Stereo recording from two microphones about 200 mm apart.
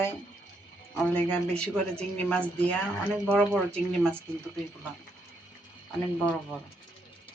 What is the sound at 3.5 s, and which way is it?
Speech, 5° left (ahead or behind).